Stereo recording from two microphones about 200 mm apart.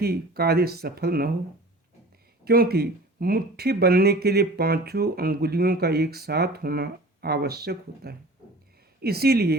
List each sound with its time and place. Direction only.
0.0 s speech: 50° right (ahead or behind)
2.4 s speech: 50° right (ahead or behind)